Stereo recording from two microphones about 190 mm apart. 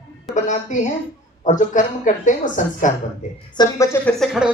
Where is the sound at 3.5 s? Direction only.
15° left (ahead or behind).